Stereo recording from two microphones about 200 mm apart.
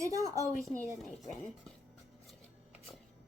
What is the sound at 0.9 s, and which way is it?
Speech, centre (ahead or behind).